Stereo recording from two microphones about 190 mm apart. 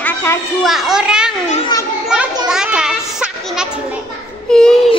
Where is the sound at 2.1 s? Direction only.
5° right (ahead or behind).